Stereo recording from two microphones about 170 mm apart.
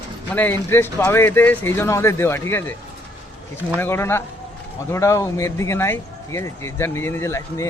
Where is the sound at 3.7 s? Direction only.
15° left (ahead or behind).